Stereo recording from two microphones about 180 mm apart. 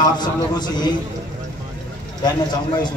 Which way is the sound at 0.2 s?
25° left (ahead or behind).